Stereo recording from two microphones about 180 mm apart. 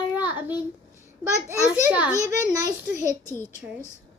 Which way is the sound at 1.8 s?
10° right (ahead or behind).